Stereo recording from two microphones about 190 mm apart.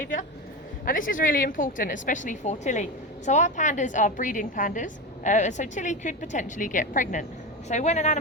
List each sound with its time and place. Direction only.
0.9 s a woman's voice: 45° left (ahead or behind)